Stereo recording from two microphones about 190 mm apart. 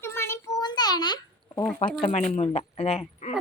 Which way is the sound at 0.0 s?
15° left (ahead or behind).